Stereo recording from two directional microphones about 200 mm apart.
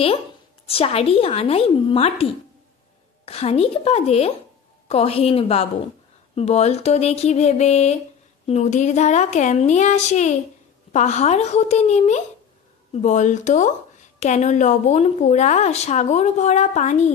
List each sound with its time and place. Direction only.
0.7 s speech: 30° left (ahead or behind)
3.3 s a woman's voice: 30° left (ahead or behind)